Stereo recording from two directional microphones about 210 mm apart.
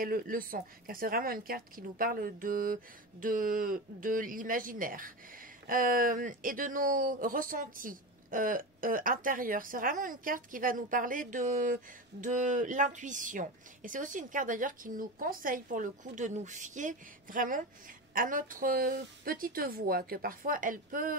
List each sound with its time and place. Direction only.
0.0 s a woman's voice: 45° right (ahead or behind)